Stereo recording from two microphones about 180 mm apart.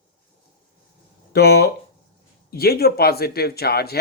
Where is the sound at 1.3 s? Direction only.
65° left (ahead or behind).